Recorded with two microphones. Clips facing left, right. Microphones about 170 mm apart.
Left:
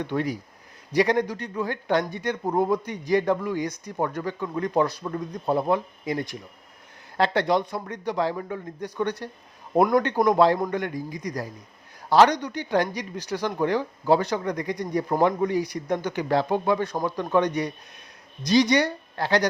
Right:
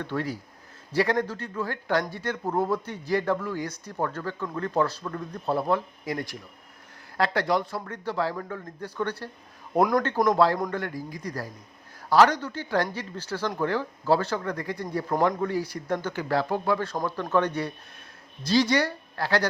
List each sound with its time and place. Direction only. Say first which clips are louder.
0.0 s speech: left 3 dB; 15° left (ahead or behind)